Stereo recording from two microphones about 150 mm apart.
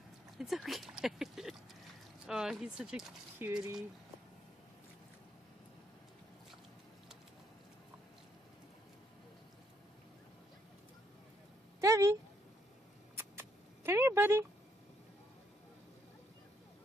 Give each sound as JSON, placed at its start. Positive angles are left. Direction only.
{"t": 0.4, "sound": "speech", "side_deg": 0}
{"t": 3.3, "sound": "speech", "side_deg": -15}
{"t": 11.8, "sound": "a sound", "side_deg": -20}